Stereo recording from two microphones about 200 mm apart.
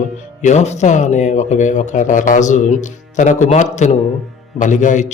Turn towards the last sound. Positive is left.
turn(degrees=35)  # may be behind; listen again after turning